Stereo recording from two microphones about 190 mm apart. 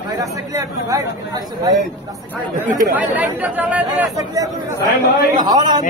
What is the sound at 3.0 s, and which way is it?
Speech, 10° right (ahead or behind).